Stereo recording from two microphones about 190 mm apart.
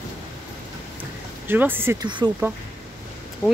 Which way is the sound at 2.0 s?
25° right (ahead or behind).